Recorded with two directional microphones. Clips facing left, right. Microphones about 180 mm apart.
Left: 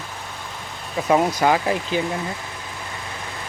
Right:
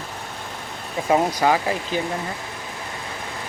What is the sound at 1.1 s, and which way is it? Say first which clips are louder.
Speech: left 1 dB; 10° right (ahead or behind).